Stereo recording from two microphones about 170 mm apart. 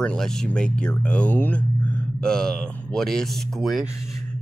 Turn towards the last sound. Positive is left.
turn(degrees=0)  # may be behind; listen again after turning